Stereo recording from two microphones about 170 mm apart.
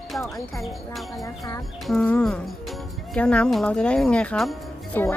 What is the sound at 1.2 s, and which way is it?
Speech, 20° left (ahead or behind).